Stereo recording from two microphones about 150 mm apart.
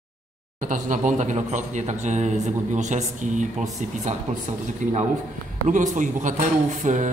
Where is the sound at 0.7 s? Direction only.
55° right (ahead or behind).